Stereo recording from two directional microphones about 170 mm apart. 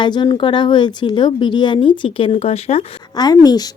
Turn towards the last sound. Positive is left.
turn(degrees=25)  # may be behind; listen again after turning